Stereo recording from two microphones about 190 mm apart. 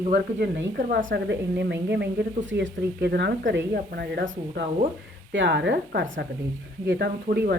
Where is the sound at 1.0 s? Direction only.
65° right (ahead or behind).